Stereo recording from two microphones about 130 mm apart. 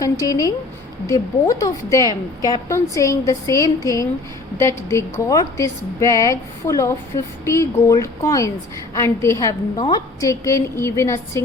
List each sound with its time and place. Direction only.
0.0 s a woman's voice: 25° left (ahead or behind)